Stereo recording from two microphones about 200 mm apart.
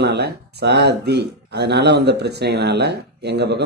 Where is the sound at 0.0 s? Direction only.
55° right (ahead or behind).